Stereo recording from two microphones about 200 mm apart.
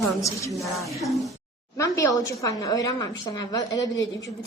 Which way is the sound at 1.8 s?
15° left (ahead or behind).